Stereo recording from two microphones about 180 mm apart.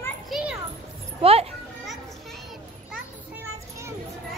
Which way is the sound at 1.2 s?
35° right (ahead or behind).